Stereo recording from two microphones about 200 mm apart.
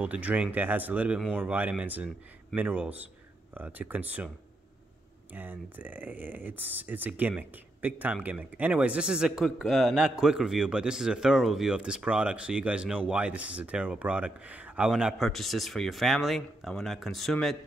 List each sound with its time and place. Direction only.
0.0 s speech: 5° right (ahead or behind)
5.3 s speech: 10° right (ahead or behind)